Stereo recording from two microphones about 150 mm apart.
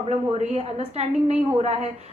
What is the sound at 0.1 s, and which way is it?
A woman's voice, 45° right (ahead or behind).